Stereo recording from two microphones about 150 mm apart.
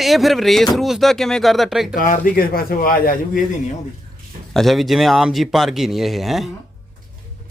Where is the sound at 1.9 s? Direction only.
70° left (ahead or behind).